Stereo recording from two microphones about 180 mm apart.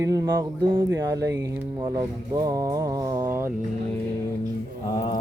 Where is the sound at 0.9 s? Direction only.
20° right (ahead or behind).